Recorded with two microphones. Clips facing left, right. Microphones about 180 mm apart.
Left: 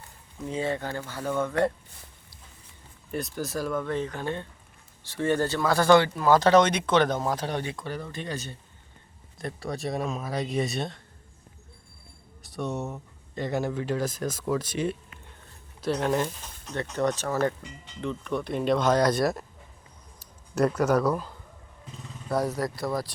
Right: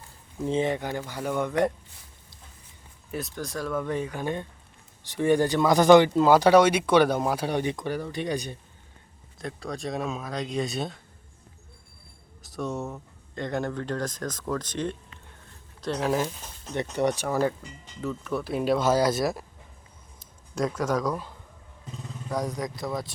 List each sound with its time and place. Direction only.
0.4 s speech: 20° right (ahead or behind)
3.1 s speech: centre (ahead or behind)
3.8 s speech: 10° right (ahead or behind)
9.4 s speech: centre (ahead or behind)
12.4 s speech: centre (ahead or behind)
16.0 s speech: 5° right (ahead or behind)
20.7 s speech: 10° left (ahead or behind)